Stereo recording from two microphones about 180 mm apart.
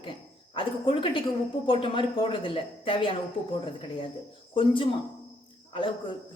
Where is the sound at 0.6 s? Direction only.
30° left (ahead or behind).